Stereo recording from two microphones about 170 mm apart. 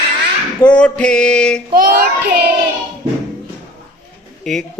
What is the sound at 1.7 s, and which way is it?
Child singing, 60° right (ahead or behind).